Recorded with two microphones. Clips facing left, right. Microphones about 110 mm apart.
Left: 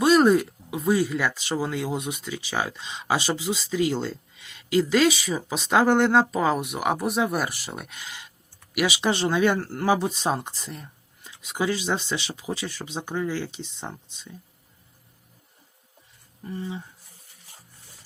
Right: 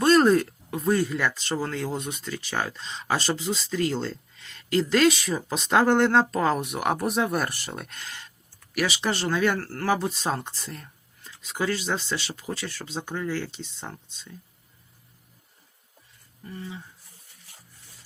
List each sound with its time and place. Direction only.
0.0 s speech: 5° left (ahead or behind)
16.4 s speech: 20° left (ahead or behind)